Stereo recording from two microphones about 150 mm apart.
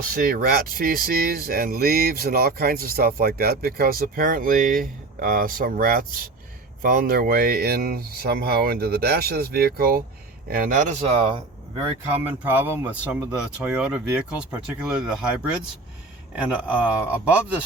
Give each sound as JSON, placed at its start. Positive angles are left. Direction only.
{"t": 0.1, "sound": "speech", "side_deg": -75}
{"t": 10.5, "sound": "speech", "side_deg": -65}
{"t": 11.0, "sound": "speech", "side_deg": -40}
{"t": 12.2, "sound": "speech", "side_deg": -15}